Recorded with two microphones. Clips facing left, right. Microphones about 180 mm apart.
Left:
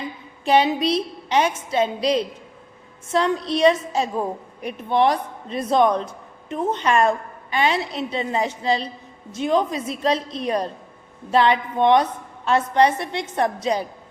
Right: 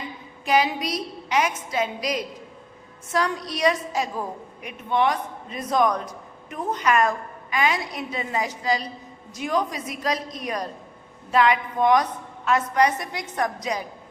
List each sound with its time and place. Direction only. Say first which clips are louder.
0.4 s a woman's voice: left 4 dB; 30° left (ahead or behind)